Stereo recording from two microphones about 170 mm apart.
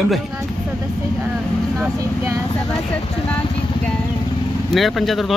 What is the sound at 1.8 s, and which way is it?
Speech, 15° right (ahead or behind).